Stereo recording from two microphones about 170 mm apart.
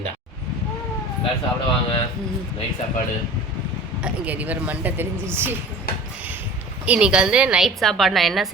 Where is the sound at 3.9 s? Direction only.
5° right (ahead or behind).